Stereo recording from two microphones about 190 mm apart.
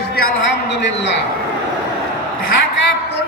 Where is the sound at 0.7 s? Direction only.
65° left (ahead or behind).